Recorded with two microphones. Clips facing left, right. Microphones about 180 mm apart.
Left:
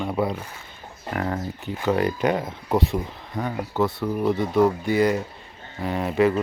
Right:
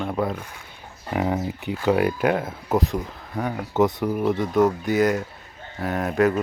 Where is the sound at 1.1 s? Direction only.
15° right (ahead or behind).